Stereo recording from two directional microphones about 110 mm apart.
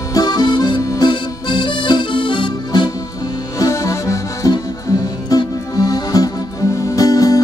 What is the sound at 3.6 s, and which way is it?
Accordion, 30° left (ahead or behind).